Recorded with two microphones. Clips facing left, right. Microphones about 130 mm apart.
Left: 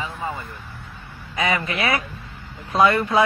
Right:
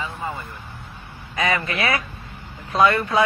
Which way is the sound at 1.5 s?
20° left (ahead or behind).